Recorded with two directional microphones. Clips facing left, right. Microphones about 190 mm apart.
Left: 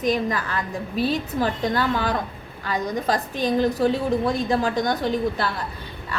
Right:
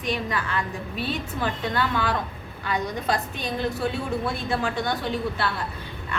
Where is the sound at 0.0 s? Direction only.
40° left (ahead or behind).